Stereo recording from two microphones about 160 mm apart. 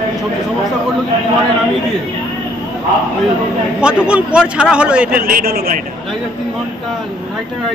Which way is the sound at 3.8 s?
5° right (ahead or behind).